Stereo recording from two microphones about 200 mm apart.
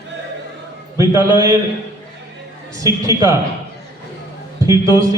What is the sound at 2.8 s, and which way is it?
Speech, 15° right (ahead or behind).